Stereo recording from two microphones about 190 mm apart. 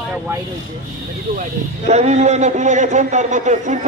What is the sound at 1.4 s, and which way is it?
A man's voice, 35° right (ahead or behind).